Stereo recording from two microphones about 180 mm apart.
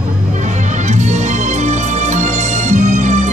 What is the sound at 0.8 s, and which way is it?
Music, 40° right (ahead or behind).